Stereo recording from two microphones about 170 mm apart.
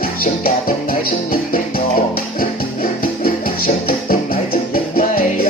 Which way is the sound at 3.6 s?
60° left (ahead or behind).